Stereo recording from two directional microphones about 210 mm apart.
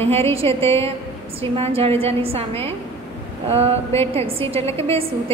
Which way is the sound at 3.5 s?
30° right (ahead or behind).